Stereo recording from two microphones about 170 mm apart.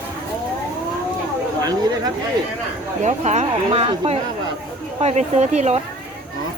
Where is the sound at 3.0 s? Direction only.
45° right (ahead or behind).